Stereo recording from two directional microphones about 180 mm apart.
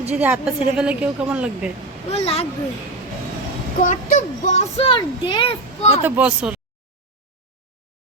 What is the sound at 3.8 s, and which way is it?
Speech, 45° left (ahead or behind).